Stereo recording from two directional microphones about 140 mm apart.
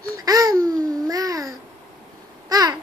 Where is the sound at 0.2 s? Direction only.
25° right (ahead or behind).